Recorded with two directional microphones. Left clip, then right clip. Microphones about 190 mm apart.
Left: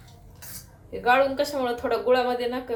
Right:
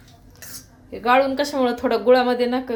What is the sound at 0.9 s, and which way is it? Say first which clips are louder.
Speech: right 3 dB; 50° right (ahead or behind).